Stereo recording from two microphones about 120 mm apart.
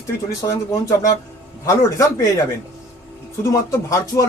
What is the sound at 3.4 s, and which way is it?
Speech, 25° left (ahead or behind).